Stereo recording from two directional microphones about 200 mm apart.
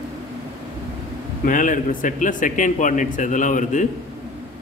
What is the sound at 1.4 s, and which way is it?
A man's voice, 40° left (ahead or behind).